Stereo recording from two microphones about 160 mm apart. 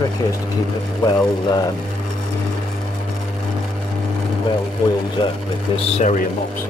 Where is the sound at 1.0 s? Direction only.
25° left (ahead or behind).